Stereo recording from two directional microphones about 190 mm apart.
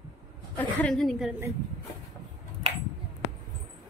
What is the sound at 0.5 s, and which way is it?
Speech, 5° left (ahead or behind).